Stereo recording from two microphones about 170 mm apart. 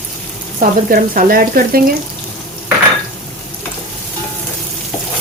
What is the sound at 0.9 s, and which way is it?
Speech, 55° right (ahead or behind).